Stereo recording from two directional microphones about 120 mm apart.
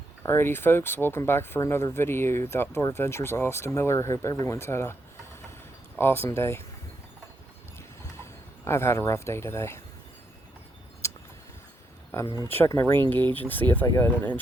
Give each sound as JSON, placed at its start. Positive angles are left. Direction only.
{"t": 0.2, "sound": "speech", "side_deg": 20}
{"t": 6.0, "sound": "speech", "side_deg": 20}
{"t": 8.2, "sound": "speech", "side_deg": 20}
{"t": 11.0, "sound": "keys jangling", "side_deg": 25}
{"t": 12.1, "sound": "speech", "side_deg": 20}
{"t": 13.8, "sound": "speech", "side_deg": 25}